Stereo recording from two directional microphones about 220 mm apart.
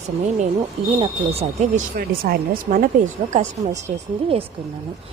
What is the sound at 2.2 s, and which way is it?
A woman's voice, 40° right (ahead or behind).